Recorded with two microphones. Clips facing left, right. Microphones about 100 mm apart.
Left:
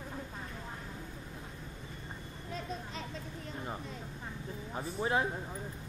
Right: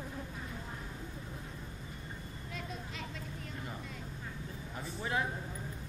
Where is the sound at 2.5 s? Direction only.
35° left (ahead or behind).